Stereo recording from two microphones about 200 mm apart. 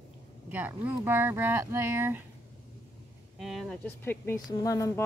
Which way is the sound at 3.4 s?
Centre (ahead or behind).